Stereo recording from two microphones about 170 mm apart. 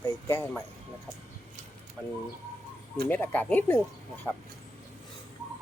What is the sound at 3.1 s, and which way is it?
Speech, 10° left (ahead or behind).